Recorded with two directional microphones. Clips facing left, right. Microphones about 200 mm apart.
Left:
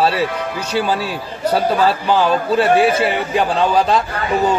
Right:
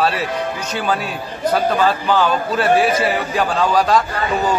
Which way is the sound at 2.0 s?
30° left (ahead or behind).